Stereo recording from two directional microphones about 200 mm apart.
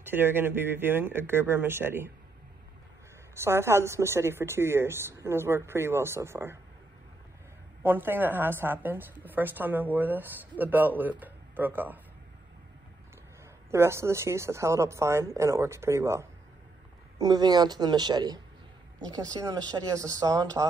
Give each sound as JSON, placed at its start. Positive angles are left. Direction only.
{"t": 0.0, "sound": "a woman's voice", "side_deg": -10}
{"t": 3.3, "sound": "a woman's voice", "side_deg": -15}
{"t": 7.8, "sound": "a woman's voice", "side_deg": -10}
{"t": 13.7, "sound": "a woman's voice", "side_deg": -15}